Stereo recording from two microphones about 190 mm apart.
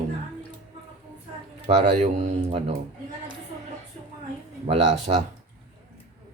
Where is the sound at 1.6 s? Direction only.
35° right (ahead or behind).